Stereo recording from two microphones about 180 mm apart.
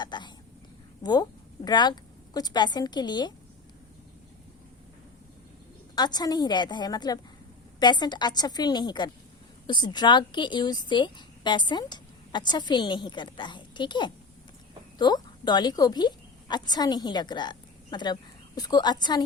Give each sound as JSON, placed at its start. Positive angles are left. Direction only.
{"t": 0.0, "sound": "a woman's voice", "side_deg": 25}
{"t": 6.0, "sound": "a woman's voice", "side_deg": 20}